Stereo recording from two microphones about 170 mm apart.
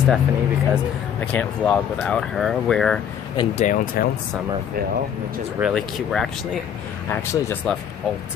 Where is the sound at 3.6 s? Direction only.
60° left (ahead or behind).